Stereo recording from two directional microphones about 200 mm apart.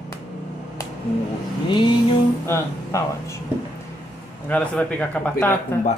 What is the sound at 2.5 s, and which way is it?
Speech, 15° left (ahead or behind).